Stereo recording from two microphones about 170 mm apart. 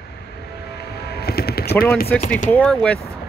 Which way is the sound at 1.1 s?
70° left (ahead or behind).